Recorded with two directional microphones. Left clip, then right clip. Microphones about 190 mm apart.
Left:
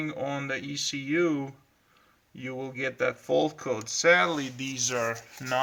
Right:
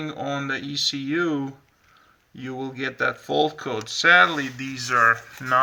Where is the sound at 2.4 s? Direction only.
15° right (ahead or behind).